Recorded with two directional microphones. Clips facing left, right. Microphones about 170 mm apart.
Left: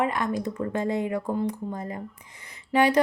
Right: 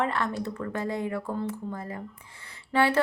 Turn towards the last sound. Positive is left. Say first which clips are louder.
# left 3 dB
turn(degrees=15)  # may be behind; listen again after turning